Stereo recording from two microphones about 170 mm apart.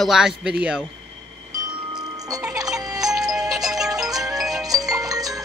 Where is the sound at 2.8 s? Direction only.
20° right (ahead or behind).